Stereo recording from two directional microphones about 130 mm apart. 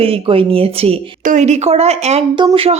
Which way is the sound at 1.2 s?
70° right (ahead or behind).